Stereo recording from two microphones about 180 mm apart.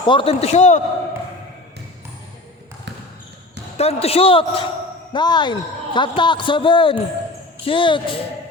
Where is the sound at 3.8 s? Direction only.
35° left (ahead or behind).